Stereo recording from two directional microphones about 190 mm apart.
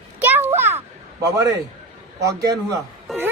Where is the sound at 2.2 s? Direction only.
15° right (ahead or behind).